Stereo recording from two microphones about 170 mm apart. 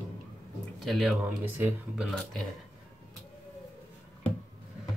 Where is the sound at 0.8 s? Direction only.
Centre (ahead or behind).